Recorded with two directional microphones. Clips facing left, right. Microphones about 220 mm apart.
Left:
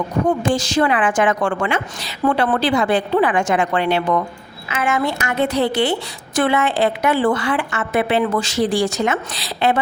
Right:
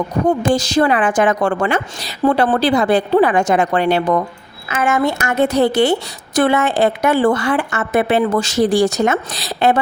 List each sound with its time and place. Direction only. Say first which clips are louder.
0.3 s a woman's voice: right 4 dB; 40° right (ahead or behind)